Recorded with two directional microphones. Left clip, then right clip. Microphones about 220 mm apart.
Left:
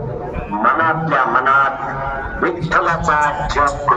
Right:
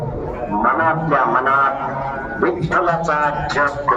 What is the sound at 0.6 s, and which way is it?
Music, 40° left (ahead or behind).